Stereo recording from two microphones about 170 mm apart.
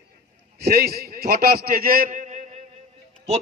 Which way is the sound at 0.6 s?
65° right (ahead or behind).